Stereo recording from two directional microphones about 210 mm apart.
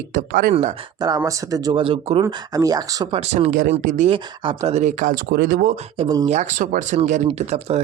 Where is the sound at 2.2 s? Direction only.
15° right (ahead or behind); by 5.7 s 45° right (ahead or behind).